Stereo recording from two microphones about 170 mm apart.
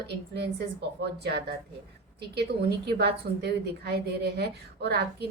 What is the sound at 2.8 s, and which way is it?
A woman's voice, 75° right (ahead or behind).